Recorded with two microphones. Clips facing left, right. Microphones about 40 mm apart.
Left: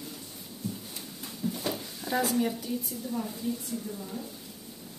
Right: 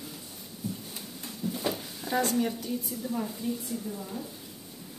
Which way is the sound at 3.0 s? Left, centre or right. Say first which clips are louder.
Right 1 dB; centre.